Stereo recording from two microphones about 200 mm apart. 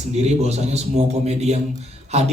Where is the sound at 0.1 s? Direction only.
30° right (ahead or behind).